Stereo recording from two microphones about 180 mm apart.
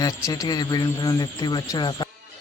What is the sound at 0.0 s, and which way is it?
Speech, 20° left (ahead or behind).